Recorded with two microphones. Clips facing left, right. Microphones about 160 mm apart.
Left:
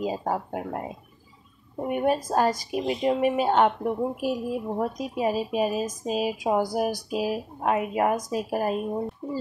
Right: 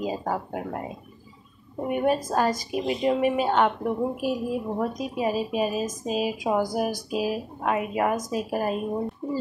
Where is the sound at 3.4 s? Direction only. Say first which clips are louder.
Left 1 dB; 30° left (ahead or behind).